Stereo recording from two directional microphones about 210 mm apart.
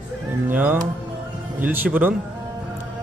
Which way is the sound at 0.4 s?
10° right (ahead or behind).